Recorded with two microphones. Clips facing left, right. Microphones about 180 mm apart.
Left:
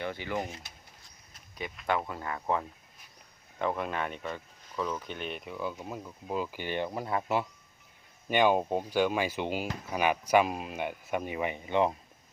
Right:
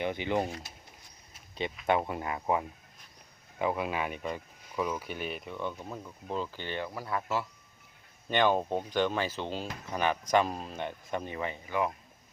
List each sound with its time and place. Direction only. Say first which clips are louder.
0.0 s speech: right 4 dB; 20° right (ahead or behind)
1.9 s speech: right 2 dB; 20° right (ahead or behind); by 11.9 s 25° left (ahead or behind)